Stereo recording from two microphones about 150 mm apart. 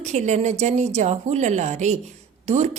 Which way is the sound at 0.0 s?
50° right (ahead or behind).